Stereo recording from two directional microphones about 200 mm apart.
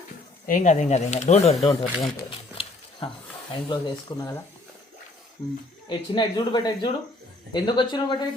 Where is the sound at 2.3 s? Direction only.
25° left (ahead or behind).